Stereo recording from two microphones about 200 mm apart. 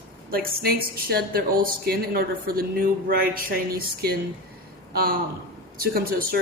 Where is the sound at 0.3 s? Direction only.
50° right (ahead or behind).